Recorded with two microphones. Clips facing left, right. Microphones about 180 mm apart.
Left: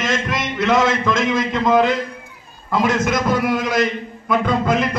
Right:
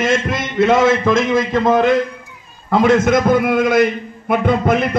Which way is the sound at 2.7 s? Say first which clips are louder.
Right 6 dB; 60° right (ahead or behind).